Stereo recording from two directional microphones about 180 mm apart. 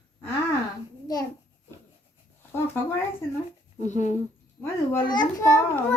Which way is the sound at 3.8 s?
40° left (ahead or behind).